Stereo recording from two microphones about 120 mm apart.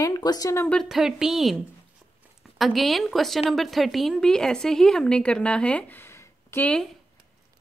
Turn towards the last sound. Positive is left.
turn(degrees=20)  # may be behind; listen again after turning